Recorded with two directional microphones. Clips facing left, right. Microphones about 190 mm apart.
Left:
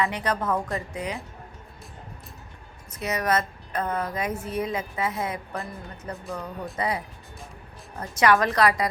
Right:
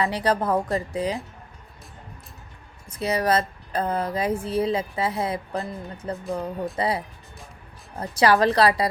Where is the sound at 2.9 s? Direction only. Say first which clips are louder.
Right 3 dB; 30° right (ahead or behind).